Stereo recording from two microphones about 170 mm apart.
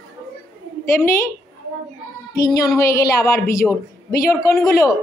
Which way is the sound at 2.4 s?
20° left (ahead or behind).